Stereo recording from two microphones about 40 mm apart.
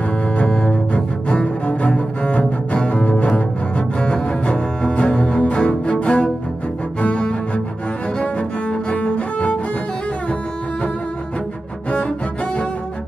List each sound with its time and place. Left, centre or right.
0.4 s cello: left